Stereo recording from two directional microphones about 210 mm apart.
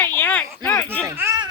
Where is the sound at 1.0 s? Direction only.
10° right (ahead or behind).